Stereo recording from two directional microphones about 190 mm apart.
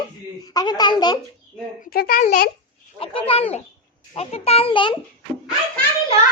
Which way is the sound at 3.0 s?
30° left (ahead or behind).